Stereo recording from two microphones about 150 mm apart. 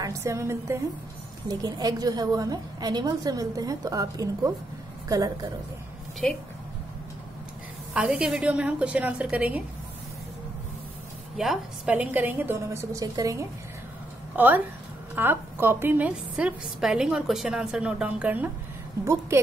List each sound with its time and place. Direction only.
0.0 s a woman's voice: 20° right (ahead or behind)
6.2 s a woman's voice: 5° left (ahead or behind)
7.9 s a woman's voice: 5° right (ahead or behind)
11.3 s a woman's voice: centre (ahead or behind); by 13.5 s 20° right (ahead or behind)
14.3 s a woman's voice: 10° right (ahead or behind)